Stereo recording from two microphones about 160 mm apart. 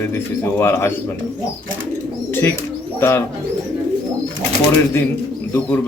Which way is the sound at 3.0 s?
15° left (ahead or behind).